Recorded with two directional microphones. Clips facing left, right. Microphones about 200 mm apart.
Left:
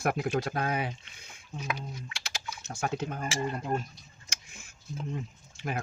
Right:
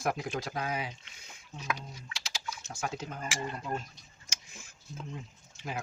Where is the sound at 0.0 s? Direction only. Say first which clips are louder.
Left 4 dB; 60° left (ahead or behind).